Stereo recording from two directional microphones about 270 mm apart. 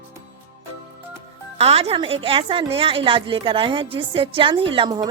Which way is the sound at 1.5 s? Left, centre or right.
Right.